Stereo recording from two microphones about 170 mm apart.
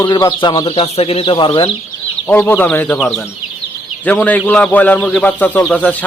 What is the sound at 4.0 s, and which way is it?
Speech, 10° left (ahead or behind).